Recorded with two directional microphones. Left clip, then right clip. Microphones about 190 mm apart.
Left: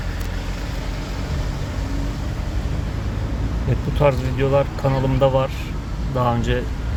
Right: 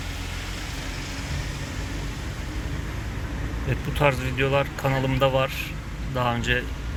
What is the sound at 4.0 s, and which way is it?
Speech, 5° left (ahead or behind).